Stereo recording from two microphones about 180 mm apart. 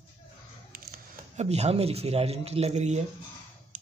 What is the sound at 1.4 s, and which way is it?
Speech, 35° right (ahead or behind).